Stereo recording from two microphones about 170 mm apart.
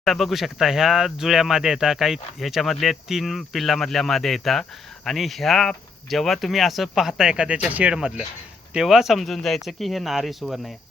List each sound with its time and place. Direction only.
0.0 s speech: centre (ahead or behind)